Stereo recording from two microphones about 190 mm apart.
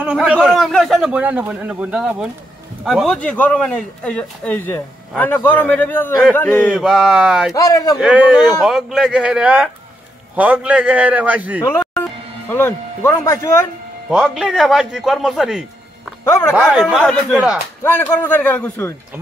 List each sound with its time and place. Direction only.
0.0 s a man's voice: 5° right (ahead or behind); by 6.7 s 10° left (ahead or behind)
6.7 s a man's voice: centre (ahead or behind)
7.5 s speech: 20° left (ahead or behind)
8.0 s a man's voice: 5° right (ahead or behind)
11.8 s speech: 10° left (ahead or behind)
14.1 s a man's voice: centre (ahead or behind)